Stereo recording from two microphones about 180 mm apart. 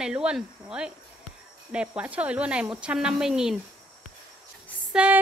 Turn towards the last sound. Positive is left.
turn(degrees=-5)  # may be behind; listen again after turning